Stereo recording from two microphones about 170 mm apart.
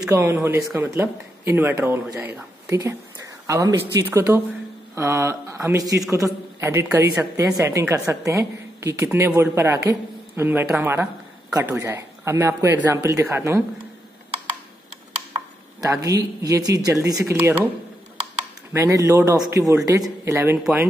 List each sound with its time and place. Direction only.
0.1 s a man's voice: 15° right (ahead or behind)
15.8 s speech: 20° right (ahead or behind)
18.7 s a man's voice: 15° right (ahead or behind)